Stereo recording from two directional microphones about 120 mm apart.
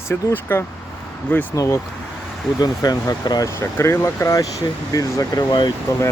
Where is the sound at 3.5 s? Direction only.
20° left (ahead or behind).